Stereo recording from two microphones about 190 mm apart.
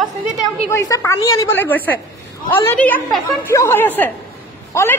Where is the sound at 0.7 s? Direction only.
15° left (ahead or behind).